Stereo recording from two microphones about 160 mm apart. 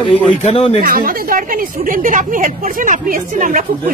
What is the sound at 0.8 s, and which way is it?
A woman's voice, 65° right (ahead or behind).